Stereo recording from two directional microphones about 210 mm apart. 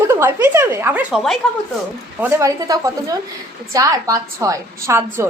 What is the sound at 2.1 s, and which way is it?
A woman's voice, 15° right (ahead or behind).